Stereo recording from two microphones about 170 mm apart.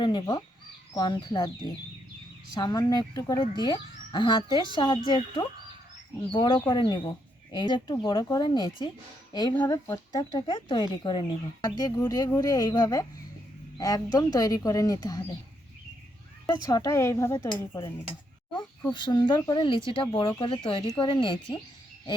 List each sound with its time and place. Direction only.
0.0 s speech: 30° left (ahead or behind)
16.5 s speech: 20° left (ahead or behind)
18.9 s speech: 25° left (ahead or behind)